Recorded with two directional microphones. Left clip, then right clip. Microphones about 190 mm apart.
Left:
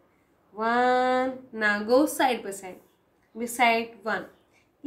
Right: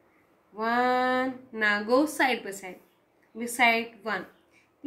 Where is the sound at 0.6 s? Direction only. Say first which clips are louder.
Left 2 dB; 10° left (ahead or behind).